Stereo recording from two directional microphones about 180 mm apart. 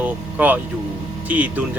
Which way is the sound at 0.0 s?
10° right (ahead or behind).